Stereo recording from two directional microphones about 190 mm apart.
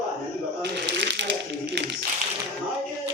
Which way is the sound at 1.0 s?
65° right (ahead or behind).